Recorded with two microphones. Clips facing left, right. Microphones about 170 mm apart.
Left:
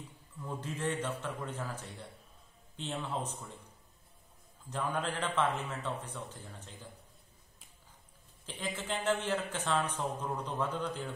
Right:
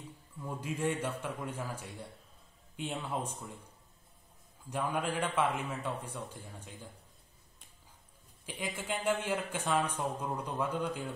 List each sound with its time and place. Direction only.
0.4 s a man's voice: 10° right (ahead or behind)
4.6 s a man's voice: 10° right (ahead or behind)
8.5 s a man's voice: 10° right (ahead or behind)